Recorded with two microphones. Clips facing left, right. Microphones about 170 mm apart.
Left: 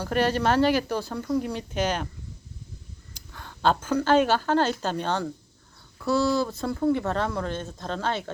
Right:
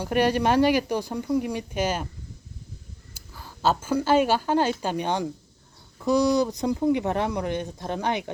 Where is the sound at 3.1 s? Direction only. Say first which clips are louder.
Even; 5° right (ahead or behind).